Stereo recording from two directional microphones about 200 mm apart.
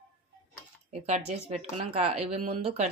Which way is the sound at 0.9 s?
35° right (ahead or behind).